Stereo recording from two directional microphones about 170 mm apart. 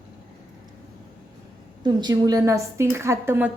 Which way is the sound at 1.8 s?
25° right (ahead or behind).